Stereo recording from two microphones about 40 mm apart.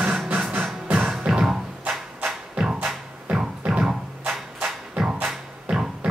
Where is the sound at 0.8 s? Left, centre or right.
Right.